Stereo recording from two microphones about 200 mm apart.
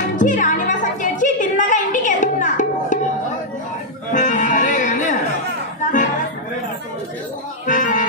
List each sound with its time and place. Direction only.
0.2 s music: 40° left (ahead or behind)
4.1 s music: 40° left (ahead or behind)
7.6 s music: 40° left (ahead or behind)